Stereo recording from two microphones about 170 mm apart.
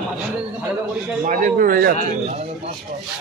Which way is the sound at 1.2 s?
50° right (ahead or behind).